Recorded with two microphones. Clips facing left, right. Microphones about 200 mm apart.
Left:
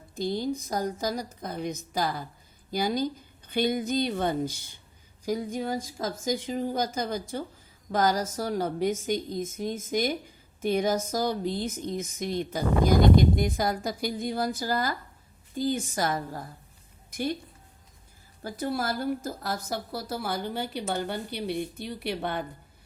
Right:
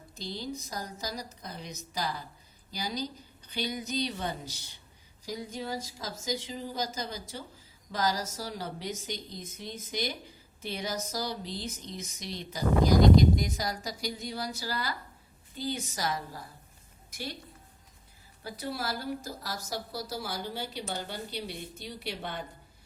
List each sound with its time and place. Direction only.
0.2 s a woman's voice: 50° left (ahead or behind)
18.4 s a woman's voice: 50° left (ahead or behind)